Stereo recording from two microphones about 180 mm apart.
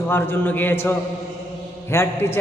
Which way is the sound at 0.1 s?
10° left (ahead or behind).